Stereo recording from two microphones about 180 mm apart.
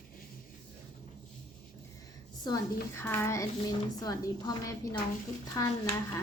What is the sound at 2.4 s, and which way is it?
Speech, 15° left (ahead or behind).